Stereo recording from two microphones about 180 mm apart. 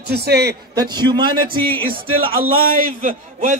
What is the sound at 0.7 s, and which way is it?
Speech, 25° right (ahead or behind).